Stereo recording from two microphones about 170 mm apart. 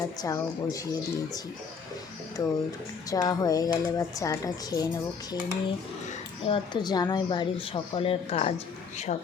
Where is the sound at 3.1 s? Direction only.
20° left (ahead or behind).